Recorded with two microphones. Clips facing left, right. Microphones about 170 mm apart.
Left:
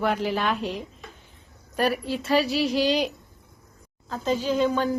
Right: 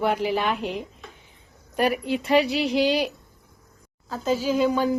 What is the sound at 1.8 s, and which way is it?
Speech, 15° right (ahead or behind).